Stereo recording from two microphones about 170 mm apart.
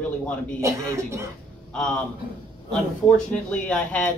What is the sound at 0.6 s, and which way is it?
Speech, 15° right (ahead or behind).